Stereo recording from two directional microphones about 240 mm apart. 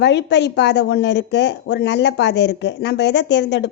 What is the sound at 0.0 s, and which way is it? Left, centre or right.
Speech, left.